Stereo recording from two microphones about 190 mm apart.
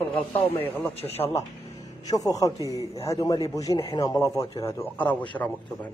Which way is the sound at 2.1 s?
20° left (ahead or behind).